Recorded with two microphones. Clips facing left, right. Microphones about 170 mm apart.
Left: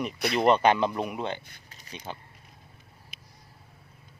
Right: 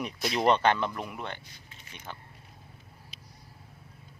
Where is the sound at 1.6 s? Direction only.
40° left (ahead or behind).